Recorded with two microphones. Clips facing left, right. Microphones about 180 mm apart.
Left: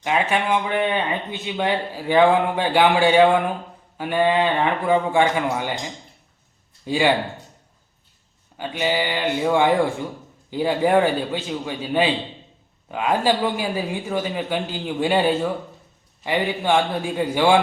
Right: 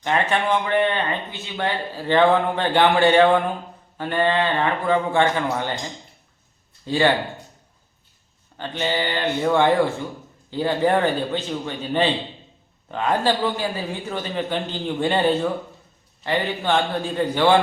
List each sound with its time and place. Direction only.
0.0 s speech: 10° left (ahead or behind)
6.8 s speech: 10° left (ahead or behind)
8.5 s speech: 10° left (ahead or behind)